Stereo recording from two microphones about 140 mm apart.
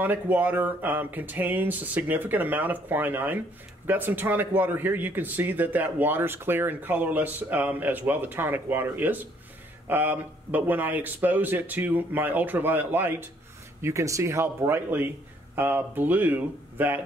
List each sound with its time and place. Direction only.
0.0 s speech: 10° right (ahead or behind)